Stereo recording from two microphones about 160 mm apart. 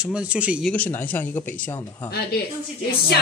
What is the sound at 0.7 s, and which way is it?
Speech, 10° left (ahead or behind).